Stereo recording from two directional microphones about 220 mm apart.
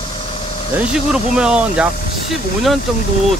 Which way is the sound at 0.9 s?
5° right (ahead or behind).